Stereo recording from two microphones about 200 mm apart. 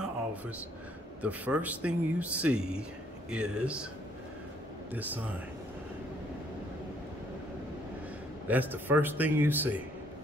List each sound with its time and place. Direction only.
1.2 s speech: 5° right (ahead or behind)
4.9 s speech: 10° right (ahead or behind)
8.5 s speech: 10° right (ahead or behind)